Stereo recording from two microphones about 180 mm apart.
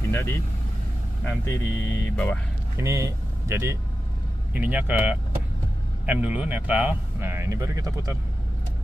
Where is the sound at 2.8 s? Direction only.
15° right (ahead or behind).